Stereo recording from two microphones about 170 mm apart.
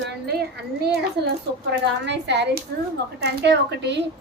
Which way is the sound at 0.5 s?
75° right (ahead or behind).